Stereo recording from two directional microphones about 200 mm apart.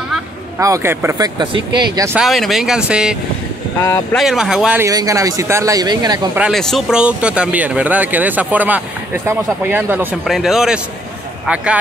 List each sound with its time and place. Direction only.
0.6 s speech: 15° right (ahead or behind)
2.1 s speech: centre (ahead or behind); by 6.2 s 20° right (ahead or behind)
6.3 s speech: centre (ahead or behind)